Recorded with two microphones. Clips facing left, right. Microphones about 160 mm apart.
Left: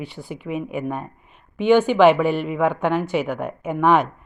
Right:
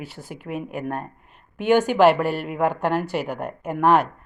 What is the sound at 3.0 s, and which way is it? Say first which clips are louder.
Speech: left 3 dB; 35° right (ahead or behind).